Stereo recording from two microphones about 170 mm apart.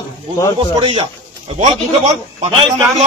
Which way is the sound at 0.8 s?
35° right (ahead or behind).